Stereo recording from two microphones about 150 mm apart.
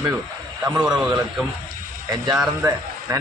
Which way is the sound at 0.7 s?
5° right (ahead or behind).